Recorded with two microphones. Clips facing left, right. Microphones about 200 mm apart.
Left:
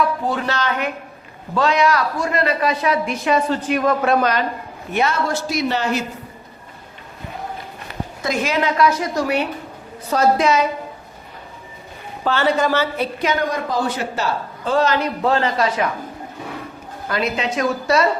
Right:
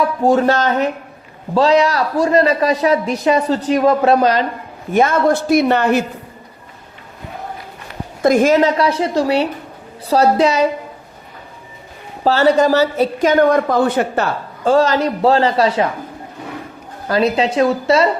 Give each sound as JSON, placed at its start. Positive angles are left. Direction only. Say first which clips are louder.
{"t": 0.2, "sound": "speech", "louder": "right 9 dB", "side_deg": -45}
{"t": 1.5, "sound": "a man's voice", "louder": "right 4 dB", "side_deg": -30}
{"t": 4.9, "sound": "speech", "louder": "right 7 dB", "side_deg": -50}
{"t": 8.2, "sound": "speech", "louder": "right 9 dB", "side_deg": -50}
{"t": 8.8, "sound": "a woman's voice", "louder": "right 2 dB", "side_deg": -30}
{"t": 12.2, "sound": "a woman's voice", "louder": "right 6 dB", "side_deg": -40}
{"t": 17.1, "sound": "a woman's voice", "louder": "right 7 dB", "side_deg": -35}